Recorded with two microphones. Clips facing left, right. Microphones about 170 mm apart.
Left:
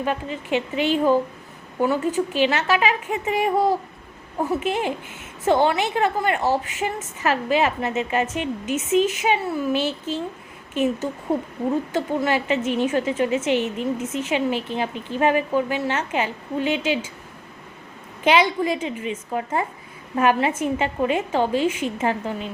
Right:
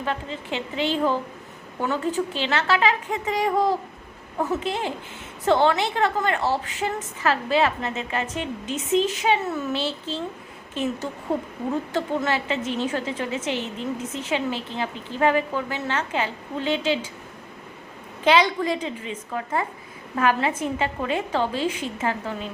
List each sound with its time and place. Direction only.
0.0 s a woman's voice: 15° left (ahead or behind)
11.9 s a woman's voice: 15° left (ahead or behind)
18.2 s a woman's voice: 15° left (ahead or behind)